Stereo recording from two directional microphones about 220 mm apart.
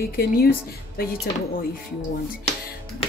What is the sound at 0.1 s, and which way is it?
Speech, 45° left (ahead or behind).